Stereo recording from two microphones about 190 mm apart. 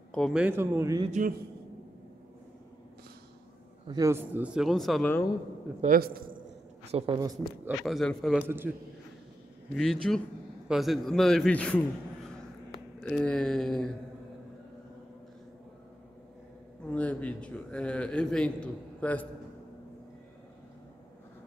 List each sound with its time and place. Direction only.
0.1 s speech: centre (ahead or behind)
3.8 s a man's voice: 20° right (ahead or behind); by 5.1 s centre (ahead or behind)
5.8 s a man's voice: 50° right (ahead or behind)
6.9 s speech: 30° right (ahead or behind)
7.2 s speech: 20° right (ahead or behind)
7.7 s a man's voice: centre (ahead or behind)
9.8 s a man's voice: 5° left (ahead or behind)
13.0 s a man's voice: 5° left (ahead or behind)
16.9 s a man's voice: 5° left (ahead or behind)